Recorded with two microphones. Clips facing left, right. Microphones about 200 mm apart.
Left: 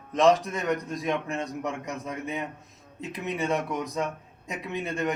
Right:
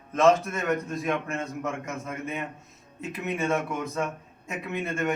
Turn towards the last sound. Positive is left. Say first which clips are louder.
# right 1 dB
turn(degrees=15)  # may be behind; listen again after turning